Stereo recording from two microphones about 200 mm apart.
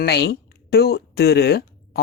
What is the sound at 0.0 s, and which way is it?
A woman's voice, 55° left (ahead or behind).